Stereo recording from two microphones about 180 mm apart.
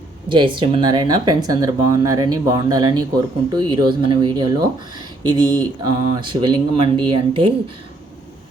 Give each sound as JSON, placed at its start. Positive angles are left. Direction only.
{"t": 0.3, "sound": "speech", "side_deg": -25}